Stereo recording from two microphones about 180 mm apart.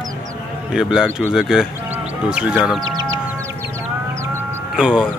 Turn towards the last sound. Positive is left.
turn(degrees=-5)  # may be behind; listen again after turning